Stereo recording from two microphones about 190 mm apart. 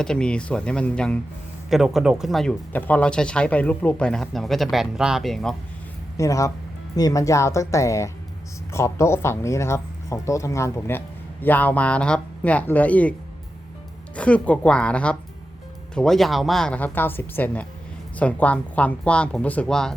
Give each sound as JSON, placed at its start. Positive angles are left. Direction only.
{"t": 0.0, "sound": "speech", "side_deg": 5}
{"t": 6.1, "sound": "speech", "side_deg": 15}
{"t": 14.2, "sound": "speech", "side_deg": 5}